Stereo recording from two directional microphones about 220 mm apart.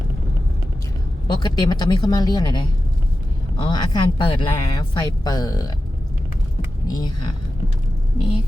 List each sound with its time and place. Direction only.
1.3 s speech: 20° left (ahead or behind)
6.8 s speech: 20° left (ahead or behind)